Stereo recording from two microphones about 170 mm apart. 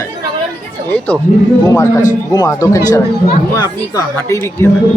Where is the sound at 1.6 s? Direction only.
20° left (ahead or behind).